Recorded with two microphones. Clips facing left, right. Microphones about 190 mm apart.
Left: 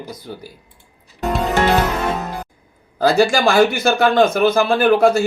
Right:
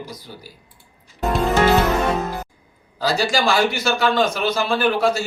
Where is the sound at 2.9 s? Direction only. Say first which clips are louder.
Left 6 dB; 55° left (ahead or behind).